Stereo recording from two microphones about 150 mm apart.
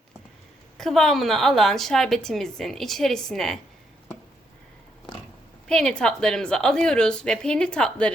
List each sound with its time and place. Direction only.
0.8 s a woman's voice: centre (ahead or behind)
5.6 s a woman's voice: 5° left (ahead or behind)